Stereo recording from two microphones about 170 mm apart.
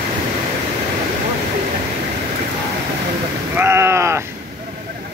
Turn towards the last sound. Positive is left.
turn(degrees=-15)  # may be behind; listen again after turning